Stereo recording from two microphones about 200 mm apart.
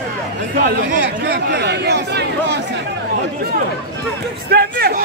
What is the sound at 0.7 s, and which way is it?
Speech, 55° right (ahead or behind).